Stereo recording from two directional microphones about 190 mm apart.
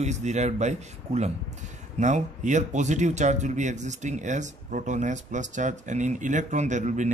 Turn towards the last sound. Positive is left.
turn(degrees=-40)  # may be behind; listen again after turning